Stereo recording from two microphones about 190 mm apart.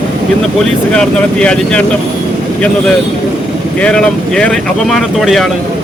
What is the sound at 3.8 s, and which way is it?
Speech, 5° left (ahead or behind).